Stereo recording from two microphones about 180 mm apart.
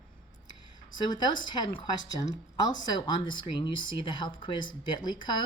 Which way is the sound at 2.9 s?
25° left (ahead or behind).